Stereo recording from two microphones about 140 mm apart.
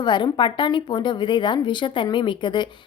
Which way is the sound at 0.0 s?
35° left (ahead or behind).